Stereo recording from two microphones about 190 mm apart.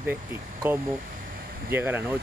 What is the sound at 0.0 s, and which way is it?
Speech, 10° right (ahead or behind).